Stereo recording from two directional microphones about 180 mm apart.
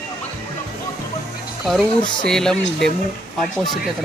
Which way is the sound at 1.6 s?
Centre (ahead or behind).